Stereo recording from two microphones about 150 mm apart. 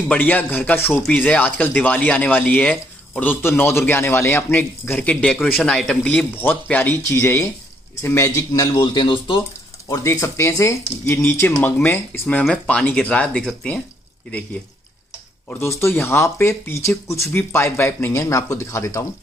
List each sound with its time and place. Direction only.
0.1 s speech: 10° left (ahead or behind); by 9.4 s 35° left (ahead or behind)
9.8 s speech: 20° left (ahead or behind)
15.6 s speech: 15° left (ahead or behind)